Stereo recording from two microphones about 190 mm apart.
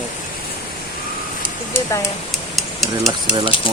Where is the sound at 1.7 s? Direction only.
15° left (ahead or behind).